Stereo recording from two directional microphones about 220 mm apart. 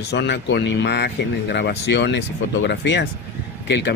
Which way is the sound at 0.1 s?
50° left (ahead or behind).